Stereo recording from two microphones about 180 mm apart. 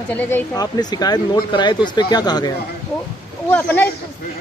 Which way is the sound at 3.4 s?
10° left (ahead or behind).